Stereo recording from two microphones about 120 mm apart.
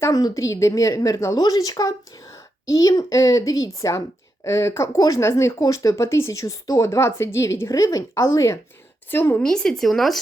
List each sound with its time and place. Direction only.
0.0 s a woman's voice: 30° left (ahead or behind)
9.4 s speech: 5° left (ahead or behind)